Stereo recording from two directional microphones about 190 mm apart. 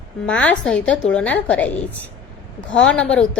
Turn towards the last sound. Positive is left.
turn(degrees=5)  # may be behind; listen again after turning